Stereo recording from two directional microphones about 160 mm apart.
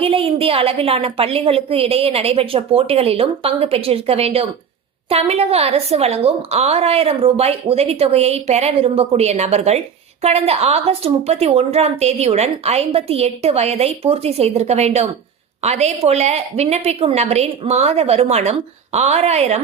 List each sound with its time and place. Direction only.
0.0 s a woman's voice: 35° right (ahead or behind)